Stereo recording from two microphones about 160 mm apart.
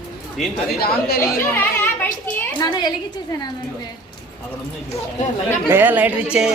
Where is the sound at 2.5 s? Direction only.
25° left (ahead or behind).